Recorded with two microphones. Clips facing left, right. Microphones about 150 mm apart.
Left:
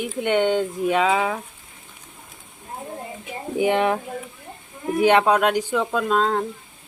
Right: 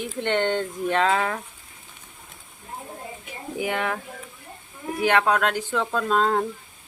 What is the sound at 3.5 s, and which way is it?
Speech, 25° left (ahead or behind).